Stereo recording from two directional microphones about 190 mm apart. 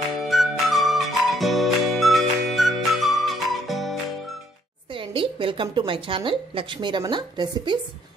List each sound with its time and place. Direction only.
0.3 s music: centre (ahead or behind)
4.9 s a woman's voice: 25° right (ahead or behind)